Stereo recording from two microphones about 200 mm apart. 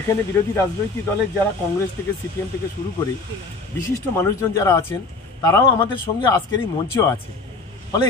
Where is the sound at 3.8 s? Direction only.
15° left (ahead or behind).